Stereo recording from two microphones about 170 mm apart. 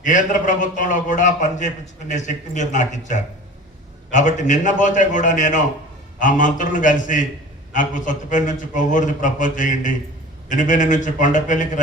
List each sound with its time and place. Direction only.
0.0 s a man's voice: 50° left (ahead or behind)